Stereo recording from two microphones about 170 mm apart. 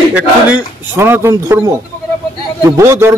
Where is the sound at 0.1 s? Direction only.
10° right (ahead or behind).